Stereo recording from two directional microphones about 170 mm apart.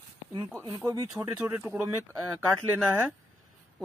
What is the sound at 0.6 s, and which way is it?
Speech, 20° right (ahead or behind).